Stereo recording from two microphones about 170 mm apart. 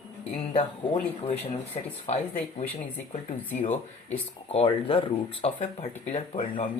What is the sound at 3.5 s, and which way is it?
Speech, 45° left (ahead or behind).